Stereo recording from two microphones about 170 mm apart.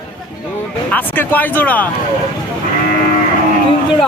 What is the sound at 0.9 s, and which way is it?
Speech, 10° left (ahead or behind).